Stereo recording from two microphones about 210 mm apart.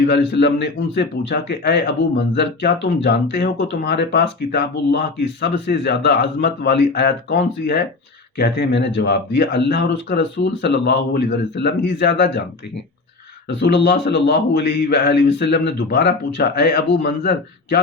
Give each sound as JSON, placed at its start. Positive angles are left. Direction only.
{"t": 0.0, "sound": "speech", "side_deg": 55}
{"t": 13.6, "sound": "speech", "side_deg": 55}